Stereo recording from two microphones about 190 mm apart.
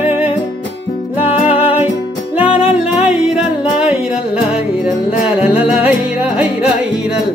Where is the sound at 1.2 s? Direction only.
30° left (ahead or behind).